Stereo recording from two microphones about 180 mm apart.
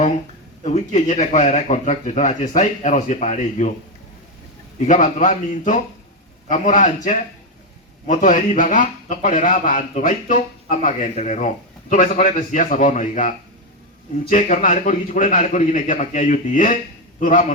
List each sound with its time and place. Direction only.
0.6 s speech: 40° left (ahead or behind)
4.8 s a man's voice: 45° left (ahead or behind)